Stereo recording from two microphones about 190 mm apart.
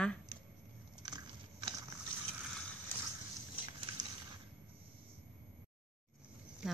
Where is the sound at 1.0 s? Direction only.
20° right (ahead or behind).